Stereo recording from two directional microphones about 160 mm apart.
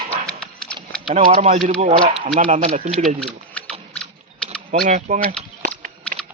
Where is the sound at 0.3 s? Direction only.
5° left (ahead or behind).